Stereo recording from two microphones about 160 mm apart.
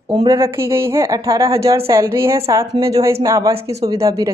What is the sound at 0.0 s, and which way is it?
A woman's voice, 25° right (ahead or behind).